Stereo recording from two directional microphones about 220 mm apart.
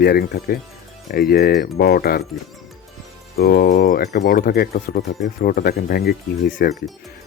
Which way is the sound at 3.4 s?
45° left (ahead or behind).